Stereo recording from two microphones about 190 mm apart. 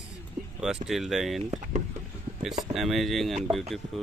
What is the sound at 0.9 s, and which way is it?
Speech, centre (ahead or behind).